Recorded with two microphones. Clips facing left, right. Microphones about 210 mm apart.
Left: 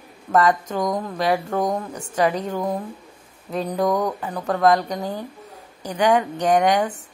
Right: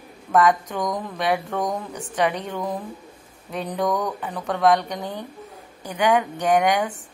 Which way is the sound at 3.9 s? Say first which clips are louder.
Left 3 dB; 20° left (ahead or behind).